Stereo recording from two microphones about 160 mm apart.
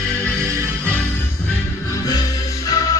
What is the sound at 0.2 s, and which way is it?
Music, 5° left (ahead or behind).